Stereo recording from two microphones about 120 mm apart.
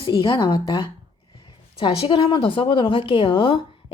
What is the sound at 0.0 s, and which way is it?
A woman's voice, 40° left (ahead or behind).